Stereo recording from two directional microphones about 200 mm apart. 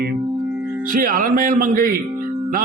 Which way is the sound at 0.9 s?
45° right (ahead or behind).